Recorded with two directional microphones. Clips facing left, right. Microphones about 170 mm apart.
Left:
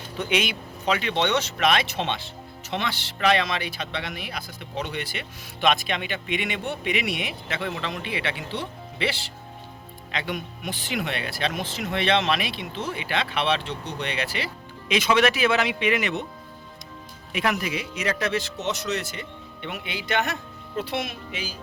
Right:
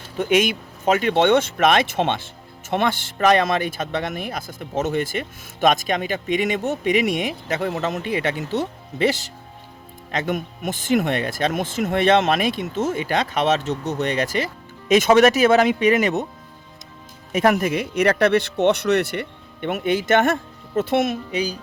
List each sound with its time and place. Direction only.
0.2 s speech: 45° right (ahead or behind)
17.3 s speech: 45° right (ahead or behind)